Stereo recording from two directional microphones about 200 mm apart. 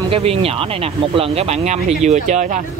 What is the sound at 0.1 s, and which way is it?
Speech, 30° right (ahead or behind).